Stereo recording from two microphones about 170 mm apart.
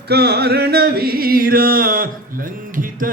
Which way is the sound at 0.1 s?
70° right (ahead or behind).